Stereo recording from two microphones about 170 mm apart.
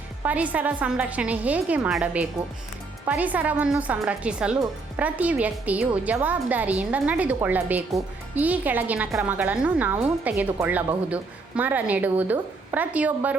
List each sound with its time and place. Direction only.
0.2 s a woman's voice: 10° right (ahead or behind)